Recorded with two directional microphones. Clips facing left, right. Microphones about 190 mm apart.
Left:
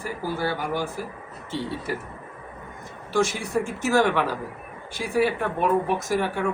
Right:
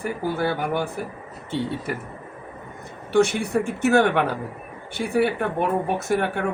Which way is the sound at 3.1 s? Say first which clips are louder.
Right 5 dB; 65° right (ahead or behind).